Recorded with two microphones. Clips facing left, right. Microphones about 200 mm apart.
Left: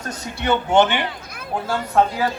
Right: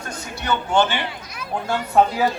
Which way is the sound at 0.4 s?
20° left (ahead or behind).